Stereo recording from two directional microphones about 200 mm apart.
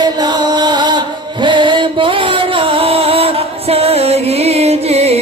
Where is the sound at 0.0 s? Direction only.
20° right (ahead or behind).